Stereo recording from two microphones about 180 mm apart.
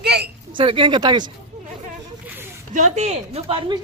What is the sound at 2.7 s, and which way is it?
A woman's voice, 40° right (ahead or behind).